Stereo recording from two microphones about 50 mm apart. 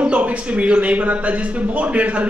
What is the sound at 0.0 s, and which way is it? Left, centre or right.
Speech, right.